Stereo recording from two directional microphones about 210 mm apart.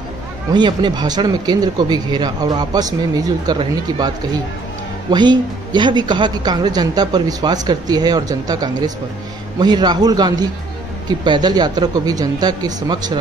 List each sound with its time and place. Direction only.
0.5 s a woman's voice: 20° right (ahead or behind)
5.1 s a woman's voice: 20° right (ahead or behind)